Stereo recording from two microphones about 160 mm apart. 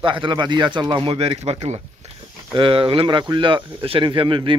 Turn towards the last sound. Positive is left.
turn(degrees=-30)  # may be behind; listen again after turning